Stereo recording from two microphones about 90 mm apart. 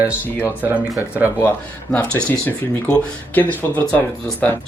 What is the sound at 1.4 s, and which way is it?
Speech, 15° left (ahead or behind).